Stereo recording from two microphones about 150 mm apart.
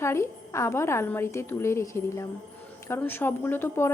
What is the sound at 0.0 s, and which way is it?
A woman's voice, 20° left (ahead or behind).